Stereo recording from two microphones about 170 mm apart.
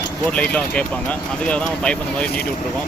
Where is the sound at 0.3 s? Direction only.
5° left (ahead or behind).